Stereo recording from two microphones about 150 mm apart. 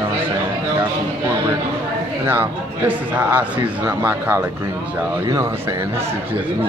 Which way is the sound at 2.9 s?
10° right (ahead or behind).